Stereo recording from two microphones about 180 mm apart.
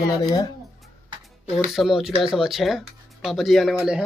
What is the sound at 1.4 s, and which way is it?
Speech, centre (ahead or behind).